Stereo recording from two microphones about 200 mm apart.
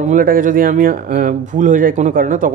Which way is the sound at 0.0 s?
40° right (ahead or behind).